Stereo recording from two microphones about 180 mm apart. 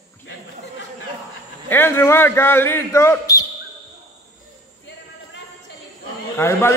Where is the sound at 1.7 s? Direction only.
10° left (ahead or behind).